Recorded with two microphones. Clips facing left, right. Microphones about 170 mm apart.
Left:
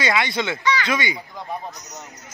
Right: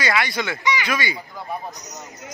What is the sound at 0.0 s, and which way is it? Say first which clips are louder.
Speech: left 1 dB; 20° left (ahead or behind).